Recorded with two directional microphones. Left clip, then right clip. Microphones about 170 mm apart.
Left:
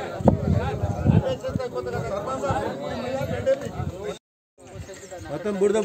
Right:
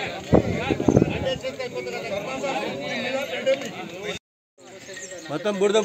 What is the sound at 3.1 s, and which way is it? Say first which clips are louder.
Speech: even; 10° left (ahead or behind).